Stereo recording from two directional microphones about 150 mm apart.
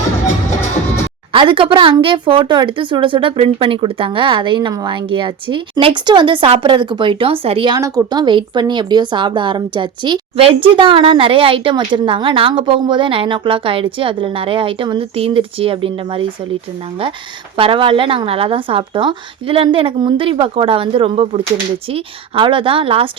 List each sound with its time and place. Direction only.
1.3 s a woman's voice: 35° right (ahead or behind)
7.8 s a woman's voice: 20° right (ahead or behind)
17.6 s a woman's voice: 35° right (ahead or behind)